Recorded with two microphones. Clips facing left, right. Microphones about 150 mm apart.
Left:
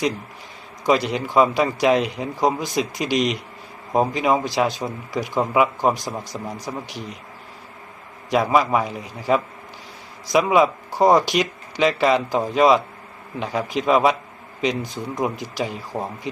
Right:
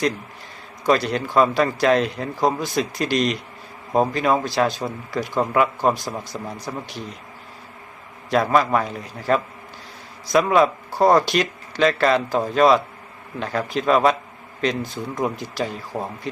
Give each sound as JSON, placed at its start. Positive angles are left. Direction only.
{"t": 0.9, "sound": "speech", "side_deg": 15}
{"t": 5.8, "sound": "speech", "side_deg": 15}
{"t": 8.3, "sound": "speech", "side_deg": 10}